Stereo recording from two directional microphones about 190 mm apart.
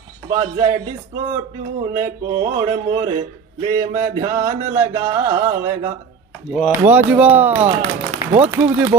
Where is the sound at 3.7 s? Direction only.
15° right (ahead or behind).